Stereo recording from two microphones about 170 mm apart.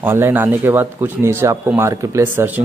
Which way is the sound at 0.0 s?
10° right (ahead or behind).